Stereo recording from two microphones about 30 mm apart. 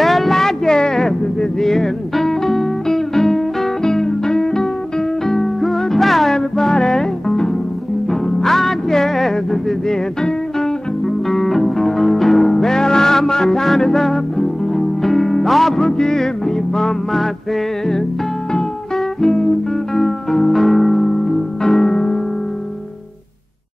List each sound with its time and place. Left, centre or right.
0.0 s a sound: centre
0.3 s music: centre
6.3 s music: centre
9.8 s music: left
11.2 s music: centre
15.7 s music: left
19.2 s music: centre